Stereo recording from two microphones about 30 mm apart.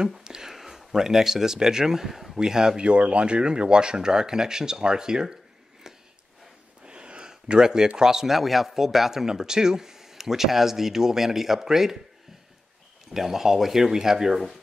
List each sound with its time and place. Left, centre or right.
0.2 s speech: centre
2.4 s speech: centre
2.8 s speech: right
5.9 s a sound: centre
6.9 s a sound: right
8.0 s speech: centre
8.3 s speech: centre
13.1 s speech: centre
13.9 s speech: centre